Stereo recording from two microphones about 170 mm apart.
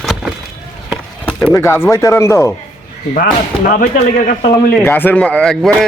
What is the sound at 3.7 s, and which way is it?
Speech, 50° left (ahead or behind).